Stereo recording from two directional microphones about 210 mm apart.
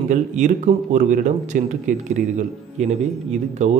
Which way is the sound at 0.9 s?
35° right (ahead or behind).